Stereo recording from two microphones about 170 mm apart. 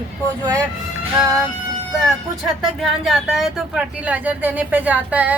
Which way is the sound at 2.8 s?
Centre (ahead or behind).